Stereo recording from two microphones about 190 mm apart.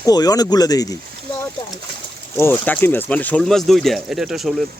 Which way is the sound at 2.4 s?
10° left (ahead or behind).